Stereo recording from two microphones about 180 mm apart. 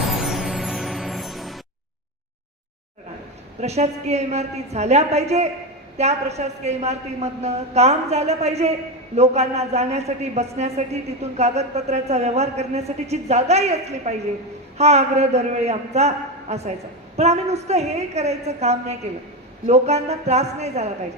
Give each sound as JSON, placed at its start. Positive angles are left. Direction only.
{"t": 0.0, "sound": "music", "side_deg": 0}
{"t": 3.6, "sound": "a man's voice", "side_deg": -40}